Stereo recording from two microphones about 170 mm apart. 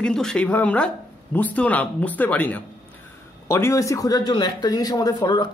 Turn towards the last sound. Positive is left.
turn(degrees=25)  # may be behind; listen again after turning